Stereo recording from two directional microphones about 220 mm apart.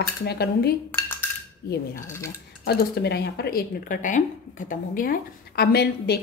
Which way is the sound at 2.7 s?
45° left (ahead or behind).